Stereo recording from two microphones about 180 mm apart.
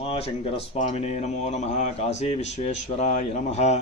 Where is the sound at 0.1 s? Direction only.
35° left (ahead or behind).